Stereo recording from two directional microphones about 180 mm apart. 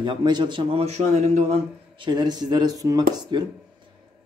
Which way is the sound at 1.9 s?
25° right (ahead or behind).